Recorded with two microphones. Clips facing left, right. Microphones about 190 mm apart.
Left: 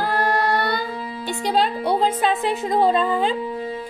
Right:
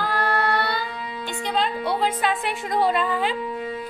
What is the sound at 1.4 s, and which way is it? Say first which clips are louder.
Music: left 4 dB; 40° left (ahead or behind).